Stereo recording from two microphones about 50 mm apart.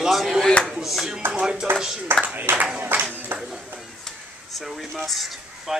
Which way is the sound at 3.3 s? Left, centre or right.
Right.